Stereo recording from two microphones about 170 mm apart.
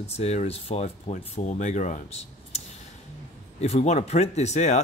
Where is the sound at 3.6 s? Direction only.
40° left (ahead or behind).